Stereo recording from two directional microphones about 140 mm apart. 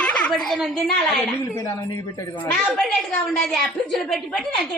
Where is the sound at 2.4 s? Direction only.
10° left (ahead or behind).